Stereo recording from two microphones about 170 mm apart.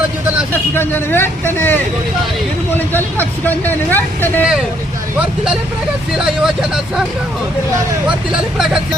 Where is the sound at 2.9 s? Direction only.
10° left (ahead or behind).